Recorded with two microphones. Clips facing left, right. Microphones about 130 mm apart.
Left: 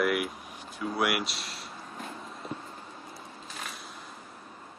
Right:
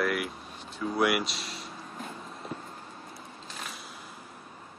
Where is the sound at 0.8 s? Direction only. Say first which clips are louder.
Right 2 dB; centre (ahead or behind).